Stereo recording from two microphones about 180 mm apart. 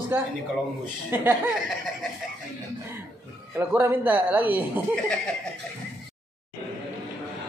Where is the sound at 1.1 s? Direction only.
5° right (ahead or behind).